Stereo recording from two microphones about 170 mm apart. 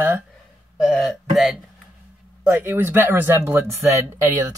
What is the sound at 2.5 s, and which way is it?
Speech, 10° right (ahead or behind).